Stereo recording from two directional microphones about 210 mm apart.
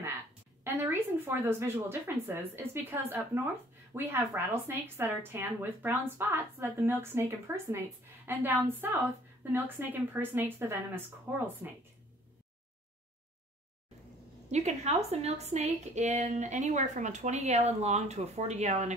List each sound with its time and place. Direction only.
0.7 s speech: 10° right (ahead or behind)
14.5 s a woman's voice: 30° right (ahead or behind)